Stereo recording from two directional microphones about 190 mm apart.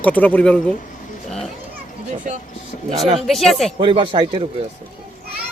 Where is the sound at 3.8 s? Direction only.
25° right (ahead or behind).